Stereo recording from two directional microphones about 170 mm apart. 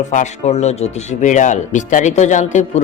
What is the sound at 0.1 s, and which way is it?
Speech, 45° left (ahead or behind).